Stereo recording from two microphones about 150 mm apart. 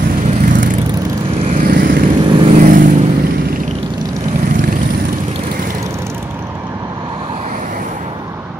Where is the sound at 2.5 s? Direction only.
60° right (ahead or behind).